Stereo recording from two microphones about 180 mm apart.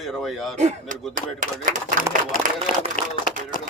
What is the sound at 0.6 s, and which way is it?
Speech, 40° right (ahead or behind).